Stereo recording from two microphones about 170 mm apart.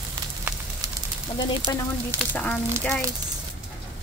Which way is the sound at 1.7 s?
20° left (ahead or behind).